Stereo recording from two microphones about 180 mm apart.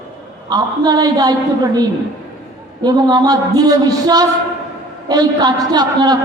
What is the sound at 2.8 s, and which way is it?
A man's voice, 20° right (ahead or behind).